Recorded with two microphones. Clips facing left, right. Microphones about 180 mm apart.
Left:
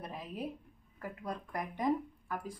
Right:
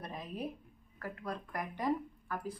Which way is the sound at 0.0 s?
5° left (ahead or behind).